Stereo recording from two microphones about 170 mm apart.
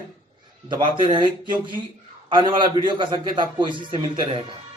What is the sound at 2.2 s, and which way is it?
Speech, 25° right (ahead or behind).